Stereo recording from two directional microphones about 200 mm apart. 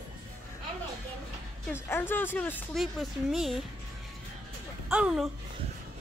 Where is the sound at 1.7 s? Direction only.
10° left (ahead or behind).